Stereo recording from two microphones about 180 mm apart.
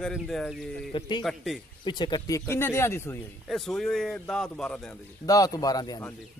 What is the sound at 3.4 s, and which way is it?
A man's voice, centre (ahead or behind).